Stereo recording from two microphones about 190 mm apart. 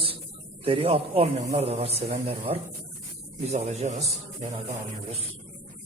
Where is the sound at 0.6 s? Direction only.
30° right (ahead or behind).